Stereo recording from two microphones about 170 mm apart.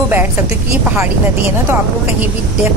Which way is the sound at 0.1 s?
10° right (ahead or behind).